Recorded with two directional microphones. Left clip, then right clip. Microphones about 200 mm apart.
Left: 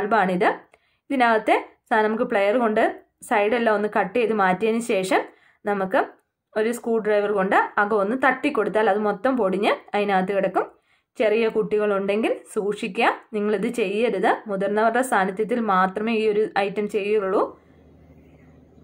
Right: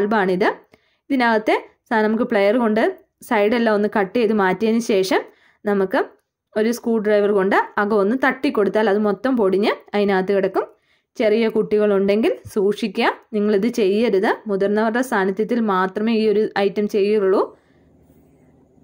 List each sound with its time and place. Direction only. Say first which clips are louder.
0.0 s speech: right 2 dB; 50° right (ahead or behind)